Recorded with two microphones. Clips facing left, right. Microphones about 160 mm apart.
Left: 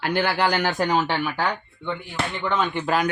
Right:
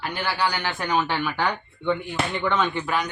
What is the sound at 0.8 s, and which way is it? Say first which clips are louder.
Speech: left 2 dB; 25° left (ahead or behind).